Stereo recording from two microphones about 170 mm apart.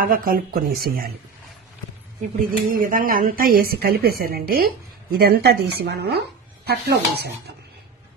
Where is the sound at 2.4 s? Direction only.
55° right (ahead or behind); by 5.7 s 70° right (ahead or behind).